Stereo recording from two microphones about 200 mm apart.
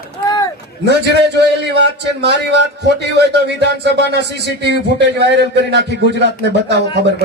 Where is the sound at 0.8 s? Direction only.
55° right (ahead or behind).